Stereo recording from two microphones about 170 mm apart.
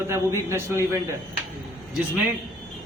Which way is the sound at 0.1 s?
15° right (ahead or behind).